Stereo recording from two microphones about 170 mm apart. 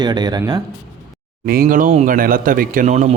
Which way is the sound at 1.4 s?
60° right (ahead or behind).